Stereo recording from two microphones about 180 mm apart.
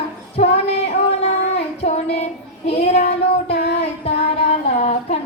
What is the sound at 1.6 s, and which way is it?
Child singing, 35° left (ahead or behind).